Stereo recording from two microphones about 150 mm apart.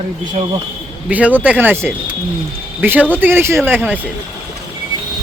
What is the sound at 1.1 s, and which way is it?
Speech, 10° right (ahead or behind).